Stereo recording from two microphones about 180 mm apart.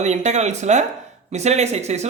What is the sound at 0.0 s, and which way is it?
A woman's voice, 40° right (ahead or behind).